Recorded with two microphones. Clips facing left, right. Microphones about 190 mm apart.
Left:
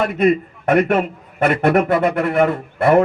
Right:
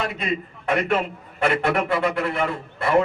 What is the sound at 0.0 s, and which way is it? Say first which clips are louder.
A man's voice: left 11 dB; 50° left (ahead or behind).